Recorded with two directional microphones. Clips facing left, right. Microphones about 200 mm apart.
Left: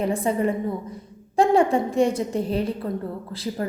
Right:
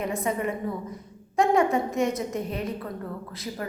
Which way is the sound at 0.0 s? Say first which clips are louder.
Left 5 dB; 30° left (ahead or behind).